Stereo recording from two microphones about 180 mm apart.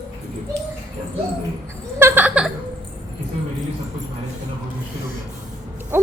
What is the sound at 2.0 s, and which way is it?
Speech, 10° right (ahead or behind).